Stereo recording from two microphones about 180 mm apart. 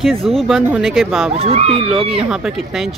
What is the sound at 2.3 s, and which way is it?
Speech, 5° right (ahead or behind).